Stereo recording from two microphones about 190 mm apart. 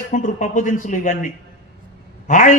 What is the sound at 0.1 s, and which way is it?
A man's voice, 40° left (ahead or behind).